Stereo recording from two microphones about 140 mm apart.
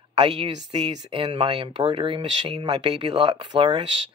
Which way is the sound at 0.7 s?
35° right (ahead or behind).